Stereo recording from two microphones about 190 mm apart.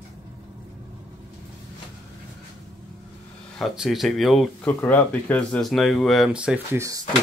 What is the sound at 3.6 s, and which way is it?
Speech, centre (ahead or behind).